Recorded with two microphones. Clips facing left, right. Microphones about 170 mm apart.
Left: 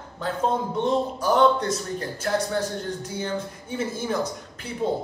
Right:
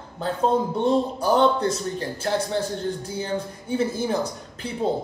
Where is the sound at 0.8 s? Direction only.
35° right (ahead or behind).